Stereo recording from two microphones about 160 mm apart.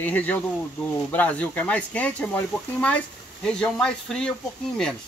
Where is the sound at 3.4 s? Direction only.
5° left (ahead or behind).